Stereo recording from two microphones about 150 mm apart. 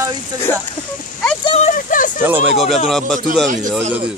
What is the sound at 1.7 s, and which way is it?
Speech, 60° left (ahead or behind).